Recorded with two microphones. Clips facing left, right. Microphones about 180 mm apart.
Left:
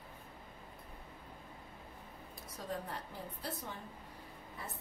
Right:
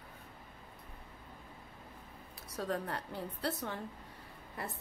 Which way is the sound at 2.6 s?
70° right (ahead or behind).